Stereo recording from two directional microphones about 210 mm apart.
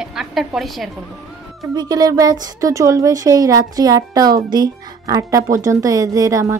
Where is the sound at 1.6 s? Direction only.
20° right (ahead or behind).